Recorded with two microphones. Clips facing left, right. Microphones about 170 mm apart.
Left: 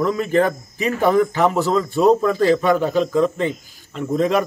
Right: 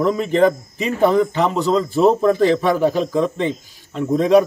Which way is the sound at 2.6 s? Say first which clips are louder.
Even; centre (ahead or behind).